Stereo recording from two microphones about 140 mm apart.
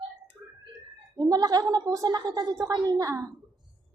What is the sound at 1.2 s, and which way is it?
A woman's voice, 25° right (ahead or behind).